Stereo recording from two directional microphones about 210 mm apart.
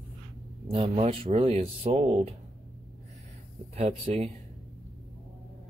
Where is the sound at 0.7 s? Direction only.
25° right (ahead or behind).